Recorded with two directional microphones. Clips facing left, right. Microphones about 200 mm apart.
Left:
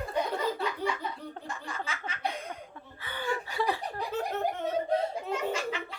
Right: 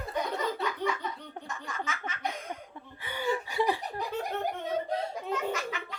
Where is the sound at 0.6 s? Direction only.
30° left (ahead or behind).